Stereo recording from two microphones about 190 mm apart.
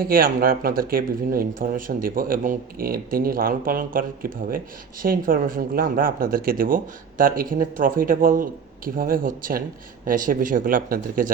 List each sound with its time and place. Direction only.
0.0 s speech: 50° right (ahead or behind)